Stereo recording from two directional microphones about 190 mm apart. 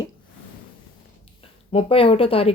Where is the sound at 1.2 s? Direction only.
30° left (ahead or behind).